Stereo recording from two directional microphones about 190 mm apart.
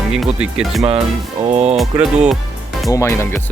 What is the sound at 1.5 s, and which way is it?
Speech, 35° right (ahead or behind).